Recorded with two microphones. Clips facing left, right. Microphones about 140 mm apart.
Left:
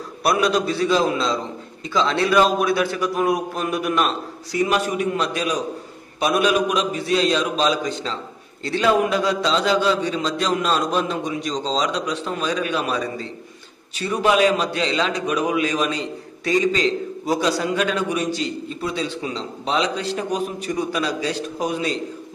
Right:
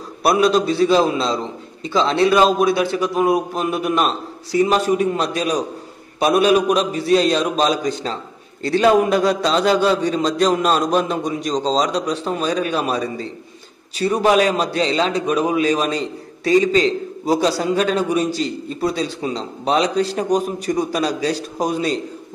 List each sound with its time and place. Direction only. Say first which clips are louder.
0.3 s a man's voice: right 4 dB; 30° right (ahead or behind)